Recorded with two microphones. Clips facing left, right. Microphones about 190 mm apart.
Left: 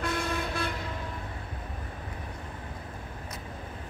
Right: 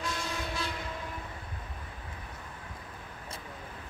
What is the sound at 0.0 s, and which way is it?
Vehicle, 55° left (ahead or behind).